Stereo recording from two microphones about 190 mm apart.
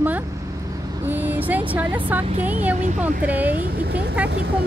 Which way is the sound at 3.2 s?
10° right (ahead or behind).